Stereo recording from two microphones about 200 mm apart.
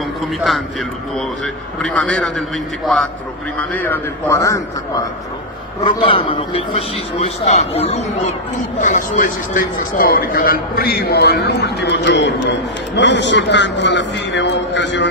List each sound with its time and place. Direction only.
0.3 s a man's voice: centre (ahead or behind)
5.9 s a man's voice: 25° left (ahead or behind); by 15.0 s 65° left (ahead or behind)